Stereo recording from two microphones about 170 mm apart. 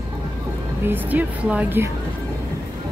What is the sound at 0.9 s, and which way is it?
Speech, 10° right (ahead or behind).